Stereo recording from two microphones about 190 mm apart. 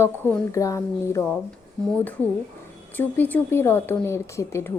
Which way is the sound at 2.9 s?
10° left (ahead or behind).